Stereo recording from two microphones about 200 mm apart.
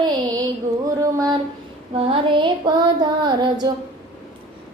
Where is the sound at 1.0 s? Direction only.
15° right (ahead or behind).